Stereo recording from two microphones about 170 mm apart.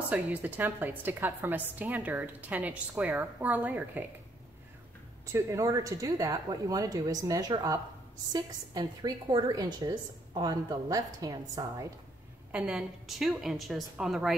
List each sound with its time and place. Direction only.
0.1 s a woman's voice: 10° right (ahead or behind)
5.2 s a woman's voice: 15° right (ahead or behind)
12.4 s a woman's voice: 5° right (ahead or behind)